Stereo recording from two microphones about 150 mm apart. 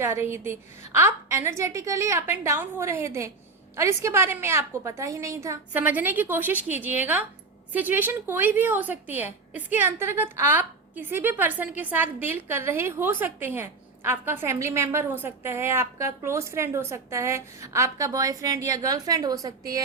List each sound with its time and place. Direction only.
0.0 s a woman's voice: 15° right (ahead or behind)